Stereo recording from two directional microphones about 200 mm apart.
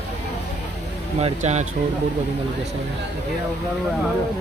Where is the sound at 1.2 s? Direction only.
35° right (ahead or behind).